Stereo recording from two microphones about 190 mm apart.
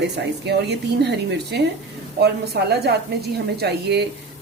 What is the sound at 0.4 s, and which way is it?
A woman's voice, 60° right (ahead or behind).